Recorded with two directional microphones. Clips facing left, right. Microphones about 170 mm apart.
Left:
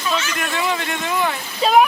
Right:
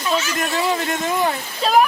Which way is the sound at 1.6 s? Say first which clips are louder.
Left 2 dB; centre (ahead or behind).